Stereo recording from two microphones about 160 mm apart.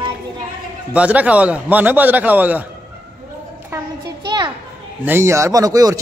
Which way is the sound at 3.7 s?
15° right (ahead or behind).